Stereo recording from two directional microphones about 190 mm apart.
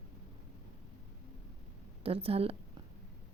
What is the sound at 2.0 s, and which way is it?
Speech, 30° right (ahead or behind).